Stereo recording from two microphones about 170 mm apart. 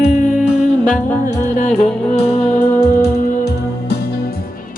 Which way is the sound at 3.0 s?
70° left (ahead or behind).